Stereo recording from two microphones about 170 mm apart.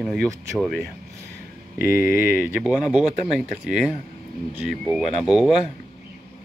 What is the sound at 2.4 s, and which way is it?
Speech, 5° right (ahead or behind).